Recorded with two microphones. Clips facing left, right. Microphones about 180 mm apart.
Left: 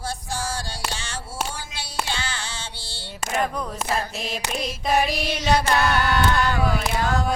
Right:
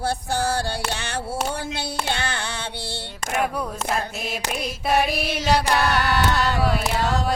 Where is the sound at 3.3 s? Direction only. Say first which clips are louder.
Right 1 dB; 10° right (ahead or behind).